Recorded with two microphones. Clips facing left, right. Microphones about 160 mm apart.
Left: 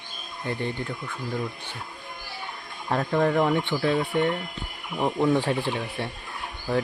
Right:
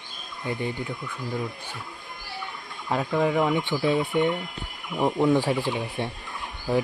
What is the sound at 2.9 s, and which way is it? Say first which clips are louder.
Speech: left 1 dB; 5° right (ahead or behind).